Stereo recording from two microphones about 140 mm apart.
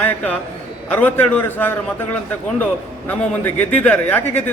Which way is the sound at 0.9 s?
10° left (ahead or behind).